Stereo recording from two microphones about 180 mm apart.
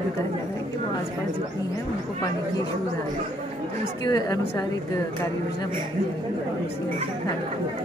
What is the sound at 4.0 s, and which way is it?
Speech, 20° left (ahead or behind).